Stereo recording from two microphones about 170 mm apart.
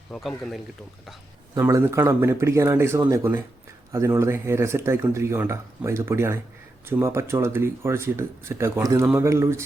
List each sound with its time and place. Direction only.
0.1 s speech: centre (ahead or behind)
1.5 s speech: 15° right (ahead or behind)